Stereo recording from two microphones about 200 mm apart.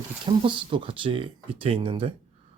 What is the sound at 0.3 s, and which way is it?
Speech, 25° right (ahead or behind).